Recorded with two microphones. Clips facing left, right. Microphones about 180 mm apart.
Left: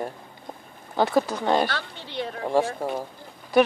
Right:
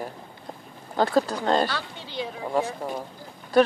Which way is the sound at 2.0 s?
60° left (ahead or behind).